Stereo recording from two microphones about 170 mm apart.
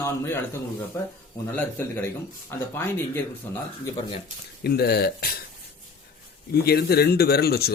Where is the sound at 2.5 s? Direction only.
15° left (ahead or behind).